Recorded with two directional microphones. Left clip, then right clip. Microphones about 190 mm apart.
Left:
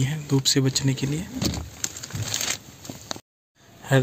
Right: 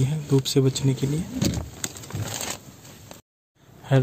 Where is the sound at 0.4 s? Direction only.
10° right (ahead or behind).